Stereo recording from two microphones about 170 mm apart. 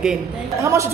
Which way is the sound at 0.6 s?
15° right (ahead or behind).